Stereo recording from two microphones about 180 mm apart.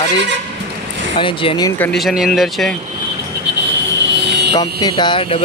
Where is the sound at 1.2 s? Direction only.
30° left (ahead or behind).